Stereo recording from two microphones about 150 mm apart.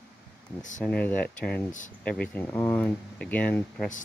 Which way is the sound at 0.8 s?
10° left (ahead or behind).